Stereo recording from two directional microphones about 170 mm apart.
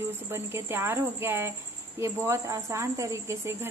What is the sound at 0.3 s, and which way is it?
Speech, 15° right (ahead or behind).